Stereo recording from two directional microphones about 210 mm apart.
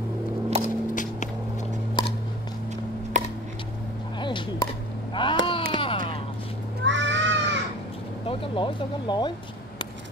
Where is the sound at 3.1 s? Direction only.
35° right (ahead or behind).